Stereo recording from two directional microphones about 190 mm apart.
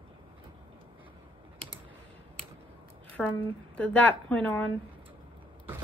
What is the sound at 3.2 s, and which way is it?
A woman's voice, centre (ahead or behind).